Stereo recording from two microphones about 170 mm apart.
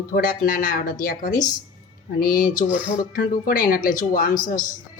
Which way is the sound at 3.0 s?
55° left (ahead or behind).